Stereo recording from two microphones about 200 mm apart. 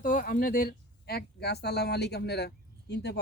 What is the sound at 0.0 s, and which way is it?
Speech, 40° left (ahead or behind).